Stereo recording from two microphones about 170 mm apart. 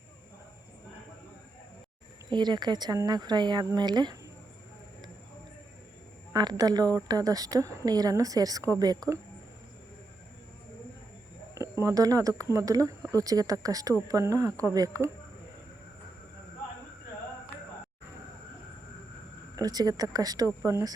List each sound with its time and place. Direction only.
2.3 s a woman's voice: 25° right (ahead or behind)
6.3 s a woman's voice: 25° right (ahead or behind)
11.8 s a woman's voice: 20° right (ahead or behind)
19.5 s a woman's voice: 20° right (ahead or behind)